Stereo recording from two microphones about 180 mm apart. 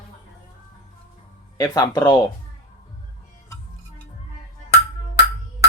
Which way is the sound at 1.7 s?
20° left (ahead or behind).